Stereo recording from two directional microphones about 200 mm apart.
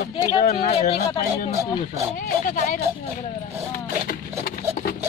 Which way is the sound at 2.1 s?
40° left (ahead or behind).